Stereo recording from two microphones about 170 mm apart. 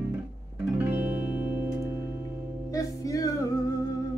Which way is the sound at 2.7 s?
20° left (ahead or behind).